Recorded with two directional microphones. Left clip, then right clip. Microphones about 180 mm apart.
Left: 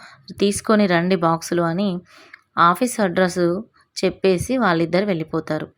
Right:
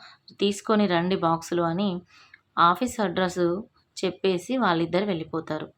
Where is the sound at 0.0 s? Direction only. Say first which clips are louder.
Left 5 dB; 30° left (ahead or behind).